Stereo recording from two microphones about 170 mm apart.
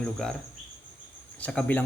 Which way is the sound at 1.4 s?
10° left (ahead or behind).